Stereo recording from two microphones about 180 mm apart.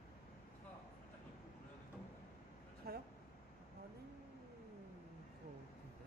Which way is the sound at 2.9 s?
60° right (ahead or behind).